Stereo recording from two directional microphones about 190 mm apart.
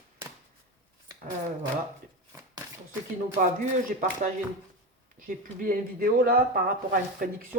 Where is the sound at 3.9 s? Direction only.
45° right (ahead or behind).